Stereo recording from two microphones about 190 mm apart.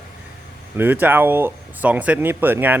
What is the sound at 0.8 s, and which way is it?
Speech, 10° right (ahead or behind).